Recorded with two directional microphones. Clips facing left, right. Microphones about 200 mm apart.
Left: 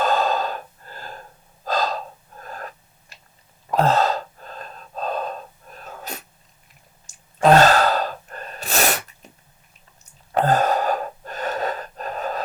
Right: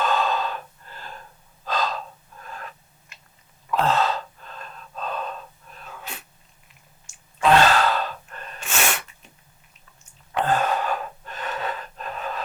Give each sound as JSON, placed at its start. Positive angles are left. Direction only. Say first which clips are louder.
{"t": 0.0, "sound": "breathing", "louder": "left 3 dB", "side_deg": 40}
{"t": 1.6, "sound": "gasp", "louder": "left 3 dB", "side_deg": 40}
{"t": 10.3, "sound": "gasp", "louder": "left 4 dB", "side_deg": 40}